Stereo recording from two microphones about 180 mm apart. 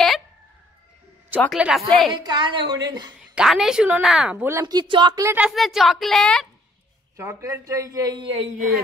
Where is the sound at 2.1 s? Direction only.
25° right (ahead or behind).